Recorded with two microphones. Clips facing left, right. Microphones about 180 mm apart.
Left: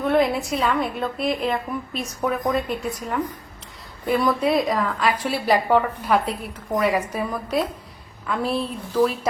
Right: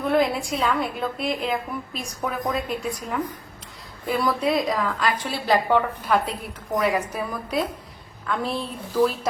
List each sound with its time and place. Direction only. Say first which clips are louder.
0.0 s a woman's voice: left 2 dB; centre (ahead or behind)
4.0 s a woman's voice: left 3 dB; centre (ahead or behind)